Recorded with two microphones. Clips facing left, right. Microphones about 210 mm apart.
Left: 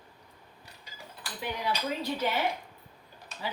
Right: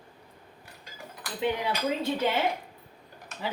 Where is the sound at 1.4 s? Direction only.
25° right (ahead or behind).